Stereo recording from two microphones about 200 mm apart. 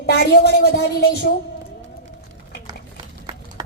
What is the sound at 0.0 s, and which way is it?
Speech, 55° left (ahead or behind).